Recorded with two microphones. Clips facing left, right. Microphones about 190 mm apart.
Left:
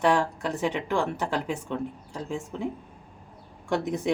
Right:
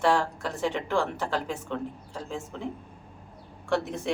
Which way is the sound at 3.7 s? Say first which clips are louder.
Left 2 dB; 15° left (ahead or behind).